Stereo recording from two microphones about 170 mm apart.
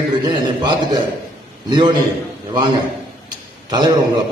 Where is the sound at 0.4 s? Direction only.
25° right (ahead or behind).